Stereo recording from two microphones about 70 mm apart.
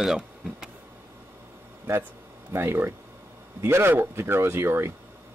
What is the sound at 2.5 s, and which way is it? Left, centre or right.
Speech, right.